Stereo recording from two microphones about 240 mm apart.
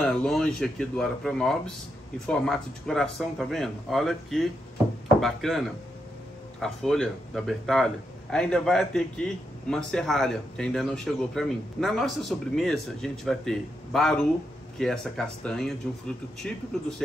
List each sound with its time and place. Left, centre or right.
0.0 s speech: centre